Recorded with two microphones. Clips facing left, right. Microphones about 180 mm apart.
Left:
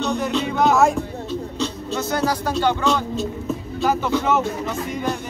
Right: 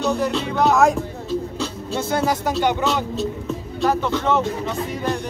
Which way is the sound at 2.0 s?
25° right (ahead or behind).